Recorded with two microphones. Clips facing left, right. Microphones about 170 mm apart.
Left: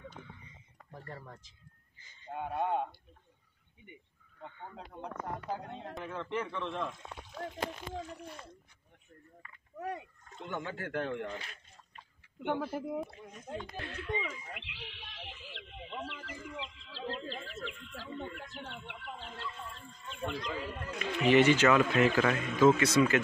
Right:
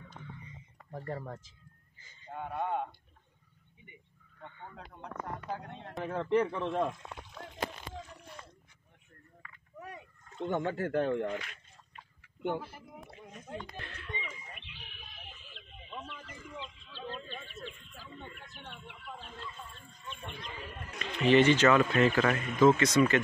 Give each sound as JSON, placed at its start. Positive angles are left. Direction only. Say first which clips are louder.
{"t": 1.0, "sound": "speech", "louder": "right 8 dB", "side_deg": -45}
{"t": 2.3, "sound": "speech", "louder": "left 2 dB", "side_deg": 15}
{"t": 4.4, "sound": "speech", "louder": "left 1 dB", "side_deg": 15}
{"t": 6.0, "sound": "speech", "louder": "right 9 dB", "side_deg": -35}
{"t": 9.8, "sound": "speech", "louder": "left 7 dB", "side_deg": 80}
{"t": 10.4, "sound": "speech", "louder": "right 7 dB", "side_deg": -35}
{"t": 11.2, "sound": "speech", "louder": "right 5 dB", "side_deg": 30}
{"t": 12.4, "sound": "speech", "louder": "left 2 dB", "side_deg": 90}
{"t": 13.7, "sound": "speech", "louder": "left 5 dB", "side_deg": 10}
{"t": 14.2, "sound": "speech", "louder": "left 5 dB", "side_deg": 90}
{"t": 21.0, "sound": "speech", "louder": "right 1 dB", "side_deg": 15}